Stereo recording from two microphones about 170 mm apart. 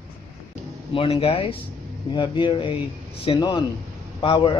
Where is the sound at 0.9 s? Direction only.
35° left (ahead or behind).